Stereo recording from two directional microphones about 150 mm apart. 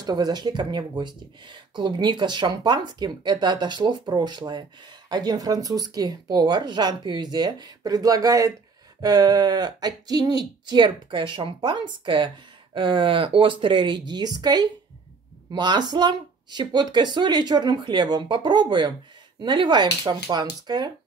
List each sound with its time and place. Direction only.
0.0 s a woman's voice: 25° right (ahead or behind)